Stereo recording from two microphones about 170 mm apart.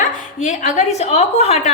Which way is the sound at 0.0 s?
45° left (ahead or behind).